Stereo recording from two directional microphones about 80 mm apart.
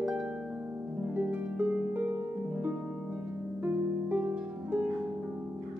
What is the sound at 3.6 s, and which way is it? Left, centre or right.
Harp, right.